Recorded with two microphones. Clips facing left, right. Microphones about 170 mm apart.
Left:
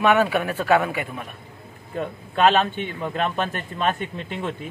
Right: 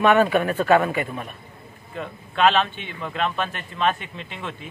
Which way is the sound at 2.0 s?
40° left (ahead or behind).